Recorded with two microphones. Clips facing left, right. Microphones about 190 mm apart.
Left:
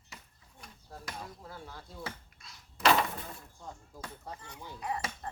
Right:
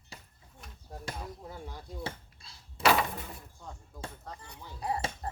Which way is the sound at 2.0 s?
30° right (ahead or behind).